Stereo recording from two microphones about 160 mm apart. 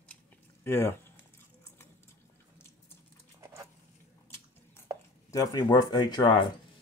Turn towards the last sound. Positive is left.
turn(degrees=30)  # may be behind; listen again after turning